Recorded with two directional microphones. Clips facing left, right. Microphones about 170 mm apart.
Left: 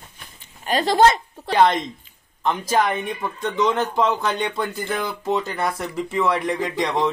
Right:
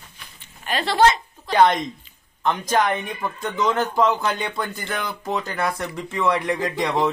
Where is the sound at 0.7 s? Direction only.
40° left (ahead or behind).